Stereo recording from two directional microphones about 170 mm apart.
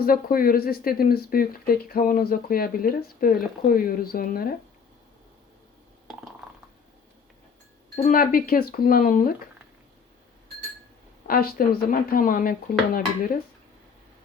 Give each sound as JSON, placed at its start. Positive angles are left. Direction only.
{"t": 0.0, "sound": "speech", "side_deg": 60}
{"t": 7.9, "sound": "speech", "side_deg": 50}
{"t": 11.3, "sound": "speech", "side_deg": 60}